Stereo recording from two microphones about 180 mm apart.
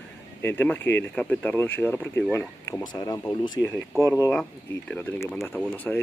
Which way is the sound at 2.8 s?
20° left (ahead or behind).